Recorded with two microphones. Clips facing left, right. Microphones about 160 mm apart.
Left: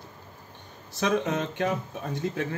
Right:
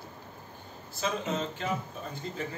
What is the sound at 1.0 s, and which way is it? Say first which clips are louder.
Speech: left 6 dB; 75° left (ahead or behind).